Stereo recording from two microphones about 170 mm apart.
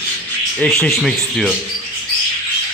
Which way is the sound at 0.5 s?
5° left (ahead or behind).